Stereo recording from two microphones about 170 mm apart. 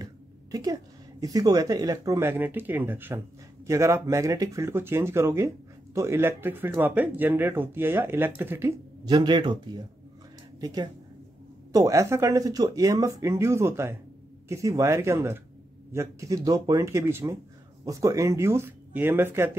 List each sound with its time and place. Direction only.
0.0 s a sound: 20° right (ahead or behind)
1.2 s speech: 20° right (ahead or behind)
10.6 s speech: 25° right (ahead or behind)